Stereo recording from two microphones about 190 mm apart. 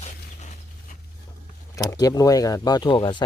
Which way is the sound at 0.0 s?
40° left (ahead or behind).